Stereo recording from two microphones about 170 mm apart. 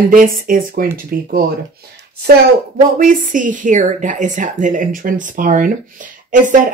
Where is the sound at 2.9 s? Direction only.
50° right (ahead or behind).